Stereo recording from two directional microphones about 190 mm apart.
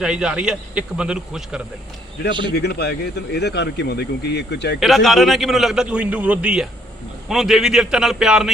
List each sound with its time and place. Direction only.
0.0 s a man's voice: 5° right (ahead or behind)
2.6 s speech: 60° left (ahead or behind)
4.8 s a man's voice: centre (ahead or behind)